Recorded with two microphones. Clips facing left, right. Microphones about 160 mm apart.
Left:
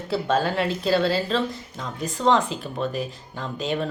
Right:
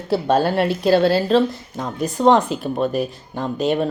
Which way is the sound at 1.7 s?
45° right (ahead or behind).